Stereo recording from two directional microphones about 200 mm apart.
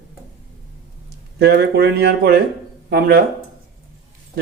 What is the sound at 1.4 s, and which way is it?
A man's voice, 55° right (ahead or behind).